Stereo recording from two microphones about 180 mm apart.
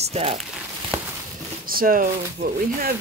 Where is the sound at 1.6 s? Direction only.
55° right (ahead or behind).